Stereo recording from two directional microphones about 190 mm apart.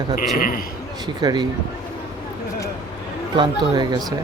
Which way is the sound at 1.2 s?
20° right (ahead or behind).